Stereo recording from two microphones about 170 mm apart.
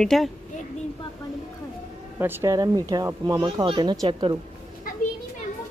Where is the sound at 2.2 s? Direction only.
15° right (ahead or behind).